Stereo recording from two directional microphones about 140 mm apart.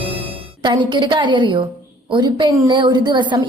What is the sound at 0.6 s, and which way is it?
A woman's voice, 35° right (ahead or behind).